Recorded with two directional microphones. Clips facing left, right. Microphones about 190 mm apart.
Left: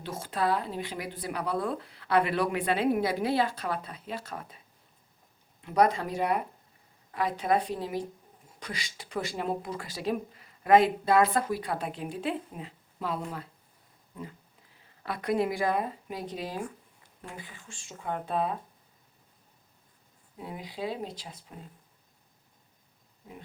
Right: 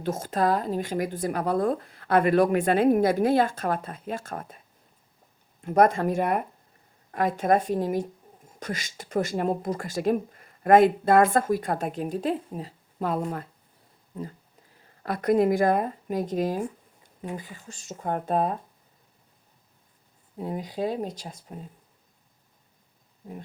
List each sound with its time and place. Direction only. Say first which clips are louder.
0.0 s speech: right 5 dB; 45° right (ahead or behind)
5.6 s speech: right 5 dB; 50° right (ahead or behind)
15.0 s speech: right 7 dB; 45° right (ahead or behind)
20.4 s speech: right 7 dB; 45° right (ahead or behind)